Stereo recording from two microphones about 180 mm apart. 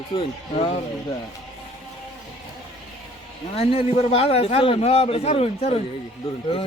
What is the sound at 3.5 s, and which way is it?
A man's voice, 35° left (ahead or behind).